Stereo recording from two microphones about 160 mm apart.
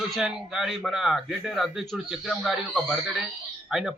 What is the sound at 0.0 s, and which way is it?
A man's voice, centre (ahead or behind).